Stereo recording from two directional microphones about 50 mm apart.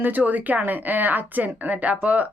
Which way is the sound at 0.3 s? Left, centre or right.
Right.